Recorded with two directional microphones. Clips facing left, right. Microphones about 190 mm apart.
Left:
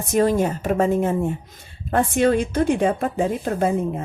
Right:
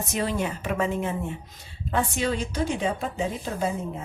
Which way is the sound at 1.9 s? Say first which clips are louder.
Left 8 dB; 55° left (ahead or behind).